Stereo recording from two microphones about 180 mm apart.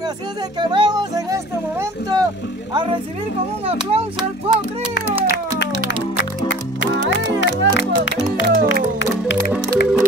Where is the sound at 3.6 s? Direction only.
30° right (ahead or behind).